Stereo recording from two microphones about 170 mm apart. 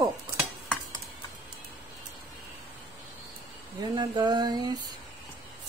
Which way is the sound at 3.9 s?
25° right (ahead or behind).